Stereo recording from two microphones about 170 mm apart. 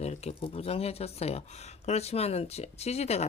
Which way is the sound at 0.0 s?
40° left (ahead or behind).